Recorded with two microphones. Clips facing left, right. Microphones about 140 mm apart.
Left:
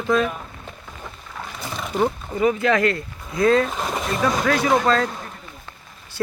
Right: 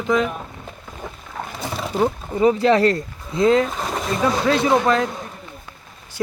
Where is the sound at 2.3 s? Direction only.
30° right (ahead or behind).